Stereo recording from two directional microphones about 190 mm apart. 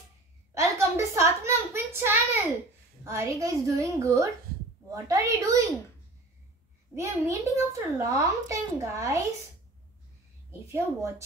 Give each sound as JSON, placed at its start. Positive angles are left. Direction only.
{"t": 0.6, "sound": "a sound", "side_deg": -15}
{"t": 3.0, "sound": "a woman's voice", "side_deg": -15}
{"t": 7.0, "sound": "a woman's voice", "side_deg": -15}
{"t": 10.7, "sound": "a woman's voice", "side_deg": -15}